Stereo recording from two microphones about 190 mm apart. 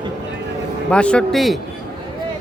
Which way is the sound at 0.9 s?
5° left (ahead or behind).